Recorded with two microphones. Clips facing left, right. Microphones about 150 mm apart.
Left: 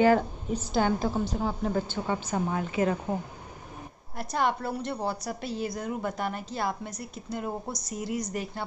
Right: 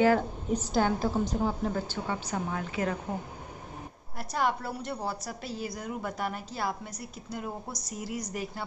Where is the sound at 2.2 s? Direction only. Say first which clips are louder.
Left 4 dB; 20° left (ahead or behind).